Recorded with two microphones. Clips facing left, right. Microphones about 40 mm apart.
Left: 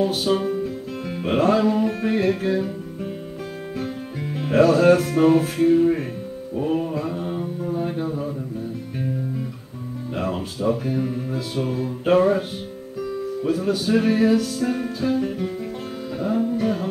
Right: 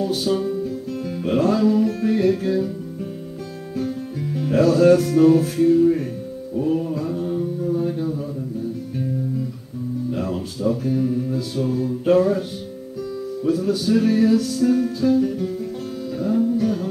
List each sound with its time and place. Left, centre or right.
0.0 s music: left
1.2 s speech: left
3.7 s music: left
6.5 s mantra: left
10.1 s speech: left
16.2 s music: left